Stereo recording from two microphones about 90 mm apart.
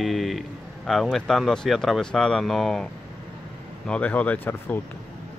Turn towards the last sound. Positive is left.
turn(degrees=20)  # may be behind; listen again after turning